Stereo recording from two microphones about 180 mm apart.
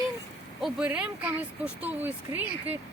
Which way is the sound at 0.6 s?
5° right (ahead or behind).